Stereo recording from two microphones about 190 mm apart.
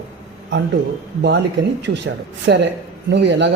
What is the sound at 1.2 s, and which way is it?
Speech, 65° right (ahead or behind).